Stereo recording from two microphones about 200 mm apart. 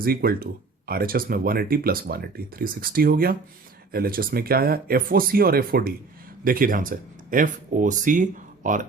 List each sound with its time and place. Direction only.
0.0 s speech: 50° right (ahead or behind)